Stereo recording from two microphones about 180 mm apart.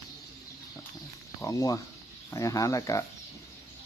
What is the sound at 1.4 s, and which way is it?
Speech, 20° left (ahead or behind).